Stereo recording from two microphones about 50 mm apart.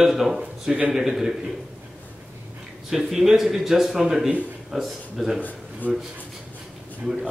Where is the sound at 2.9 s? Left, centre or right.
Centre.